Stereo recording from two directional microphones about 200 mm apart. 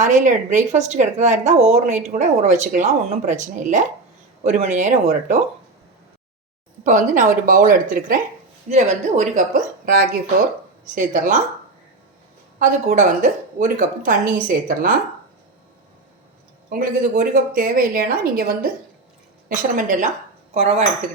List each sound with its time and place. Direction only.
0.0 s speech: 40° right (ahead or behind)
6.8 s speech: 40° right (ahead or behind)
12.5 s a woman's voice: 40° right (ahead or behind)
16.6 s a woman's voice: 40° right (ahead or behind)
19.7 s speech: 40° right (ahead or behind)